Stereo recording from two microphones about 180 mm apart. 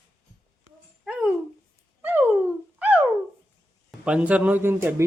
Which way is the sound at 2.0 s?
10° right (ahead or behind).